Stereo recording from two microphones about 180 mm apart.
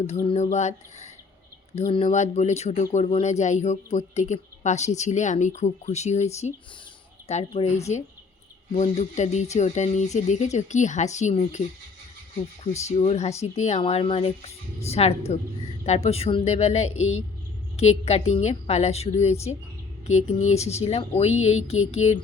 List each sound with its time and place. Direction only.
0.3 s speech: 40° left (ahead or behind)
13.0 s speech: 35° left (ahead or behind)